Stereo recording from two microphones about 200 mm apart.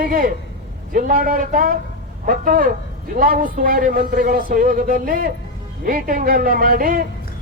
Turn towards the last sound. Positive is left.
turn(degrees=-45)  # may be behind; listen again after turning